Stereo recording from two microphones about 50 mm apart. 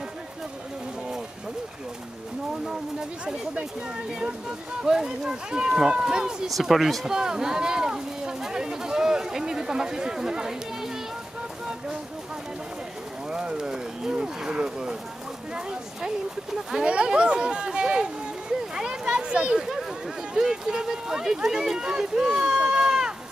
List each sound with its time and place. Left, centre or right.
2.6 s speech: centre
6.5 s speech: centre
7.1 s speech: centre
13.3 s speech: centre
18.8 s children playing: centre
20.3 s speech: centre